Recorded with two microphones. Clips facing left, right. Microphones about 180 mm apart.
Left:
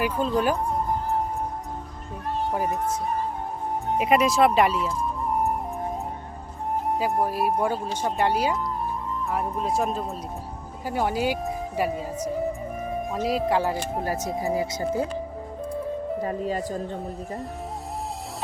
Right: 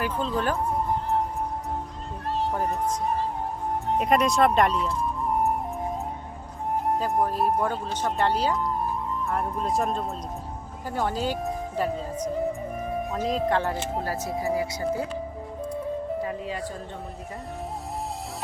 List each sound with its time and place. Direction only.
0.0 s speech: 10° left (ahead or behind)
3.9 s speech: 5° left (ahead or behind)
6.8 s speech: 5° left (ahead or behind); by 15.0 s 25° left (ahead or behind)
16.2 s speech: 40° left (ahead or behind)